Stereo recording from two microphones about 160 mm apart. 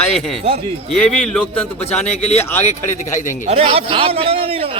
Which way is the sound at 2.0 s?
45° left (ahead or behind).